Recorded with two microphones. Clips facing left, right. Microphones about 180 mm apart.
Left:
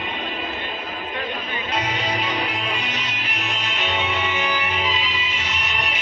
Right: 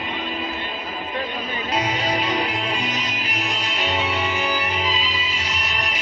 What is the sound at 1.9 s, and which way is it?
Music, 40° right (ahead or behind).